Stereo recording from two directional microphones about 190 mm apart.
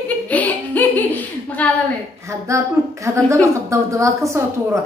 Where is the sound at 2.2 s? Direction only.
15° right (ahead or behind).